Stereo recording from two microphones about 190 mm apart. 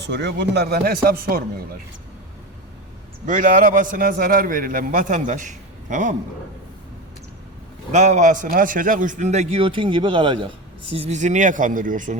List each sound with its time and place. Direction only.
0.0 s a man's voice: 65° right (ahead or behind)
3.2 s a man's voice: 45° right (ahead or behind)
7.9 s a man's voice: 40° right (ahead or behind)